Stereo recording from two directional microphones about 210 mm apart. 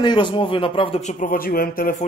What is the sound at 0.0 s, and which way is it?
Speech, 20° left (ahead or behind).